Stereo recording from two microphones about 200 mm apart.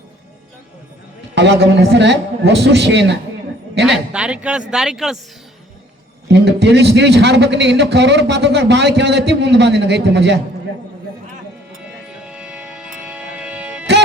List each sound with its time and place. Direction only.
1.4 s a man's voice: 55° right (ahead or behind)
3.8 s speech: 5° right (ahead or behind)
6.4 s a man's voice: 55° right (ahead or behind)
11.8 s music: 5° right (ahead or behind)